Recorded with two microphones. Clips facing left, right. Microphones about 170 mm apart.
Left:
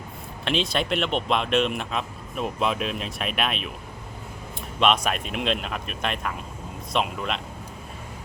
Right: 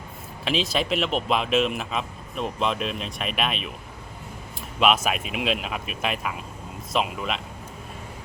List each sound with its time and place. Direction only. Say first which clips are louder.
0.4 s speech: even; centre (ahead or behind)
4.8 s speech: even; 5° right (ahead or behind)